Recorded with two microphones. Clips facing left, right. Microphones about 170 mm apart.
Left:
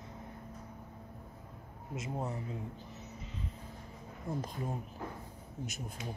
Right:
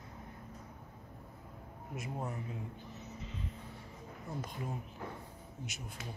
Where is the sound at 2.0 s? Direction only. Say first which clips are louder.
Left 2 dB; 20° left (ahead or behind).